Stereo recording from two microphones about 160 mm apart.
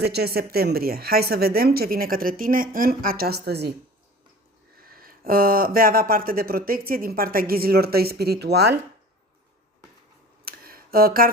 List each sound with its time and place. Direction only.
0.0 s speech: 85° right
4.8 s speech: 65° right (ahead or behind); by 8.7 s 90° right
10.4 s a sound: 65° right (ahead or behind)